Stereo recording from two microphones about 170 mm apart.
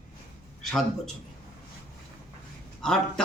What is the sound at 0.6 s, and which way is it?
Speech, centre (ahead or behind).